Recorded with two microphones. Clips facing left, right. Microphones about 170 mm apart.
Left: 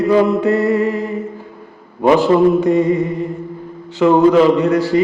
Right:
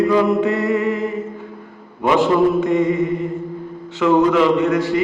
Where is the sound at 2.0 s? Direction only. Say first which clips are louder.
Left 4 dB; 35° left (ahead or behind).